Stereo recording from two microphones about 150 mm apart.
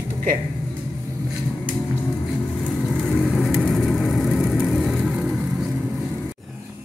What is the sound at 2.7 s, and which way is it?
Vehicle, 5° left (ahead or behind).